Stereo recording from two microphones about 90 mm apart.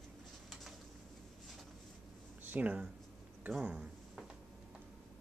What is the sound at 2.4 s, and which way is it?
Speech, 20° right (ahead or behind).